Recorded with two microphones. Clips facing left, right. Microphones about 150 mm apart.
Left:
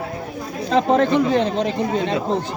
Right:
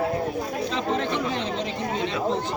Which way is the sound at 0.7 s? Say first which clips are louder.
Left 12 dB; 45° left (ahead or behind).